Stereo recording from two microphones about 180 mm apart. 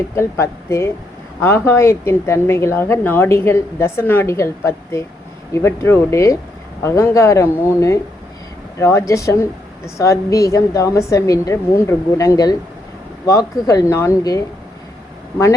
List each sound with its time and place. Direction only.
0.2 s a woman's voice: 15° left (ahead or behind)